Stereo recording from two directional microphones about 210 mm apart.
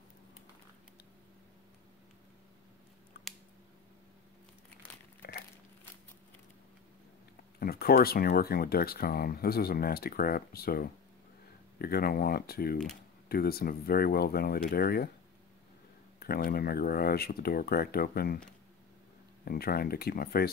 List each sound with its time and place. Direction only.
5.2 s a sound: 50° left (ahead or behind)
7.5 s speech: 45° left (ahead or behind)
16.2 s speech: 45° left (ahead or behind)
19.4 s speech: 45° left (ahead or behind)